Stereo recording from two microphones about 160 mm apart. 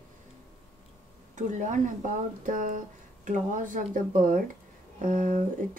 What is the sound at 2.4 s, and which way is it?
Speech, 55° right (ahead or behind).